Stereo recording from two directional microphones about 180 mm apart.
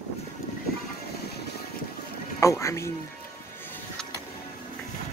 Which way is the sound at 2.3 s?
15° left (ahead or behind).